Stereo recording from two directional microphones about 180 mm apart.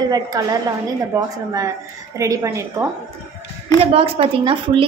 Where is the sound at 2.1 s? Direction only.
15° right (ahead or behind).